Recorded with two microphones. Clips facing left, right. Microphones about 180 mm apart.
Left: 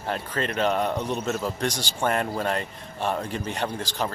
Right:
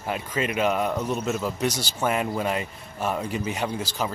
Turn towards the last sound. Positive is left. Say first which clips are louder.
# right 1 dB
turn(degrees=-5)  # may be behind; listen again after turning